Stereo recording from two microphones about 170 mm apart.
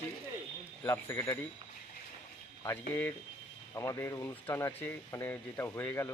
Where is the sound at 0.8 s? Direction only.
15° left (ahead or behind).